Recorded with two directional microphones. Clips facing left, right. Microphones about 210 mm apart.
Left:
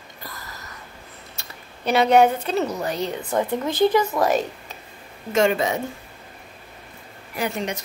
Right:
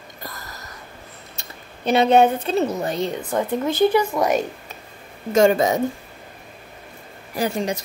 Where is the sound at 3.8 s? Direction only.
10° right (ahead or behind).